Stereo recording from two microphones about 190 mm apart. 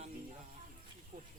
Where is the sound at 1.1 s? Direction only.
40° right (ahead or behind).